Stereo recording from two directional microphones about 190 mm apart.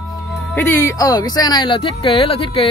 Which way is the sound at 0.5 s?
10° left (ahead or behind).